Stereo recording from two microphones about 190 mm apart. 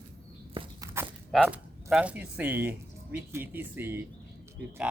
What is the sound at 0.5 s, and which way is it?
Walk, 25° right (ahead or behind).